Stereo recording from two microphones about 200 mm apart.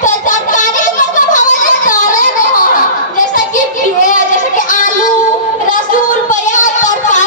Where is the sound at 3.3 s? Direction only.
40° left (ahead or behind).